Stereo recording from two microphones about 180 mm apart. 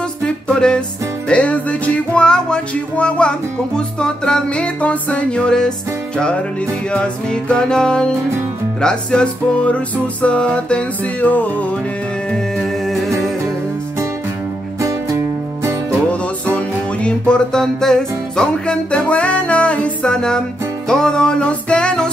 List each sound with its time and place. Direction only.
0.2 s music: 5° left (ahead or behind)
12.8 s music: centre (ahead or behind)
14.8 s music: 15° right (ahead or behind)
16.5 s music: 5° left (ahead or behind)